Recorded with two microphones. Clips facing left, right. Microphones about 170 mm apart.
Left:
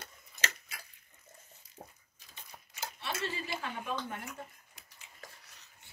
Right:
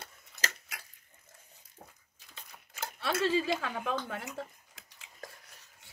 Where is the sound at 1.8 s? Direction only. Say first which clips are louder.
Left 3 dB; 45° left (ahead or behind).